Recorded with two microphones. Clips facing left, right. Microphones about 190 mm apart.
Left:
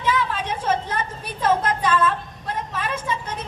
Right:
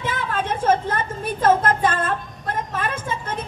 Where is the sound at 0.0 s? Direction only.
50° right (ahead or behind).